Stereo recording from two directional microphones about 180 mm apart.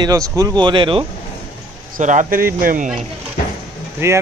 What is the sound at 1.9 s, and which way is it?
Speech, 45° right (ahead or behind).